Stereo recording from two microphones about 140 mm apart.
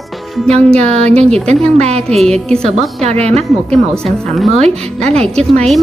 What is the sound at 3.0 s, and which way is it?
Speech, 50° right (ahead or behind).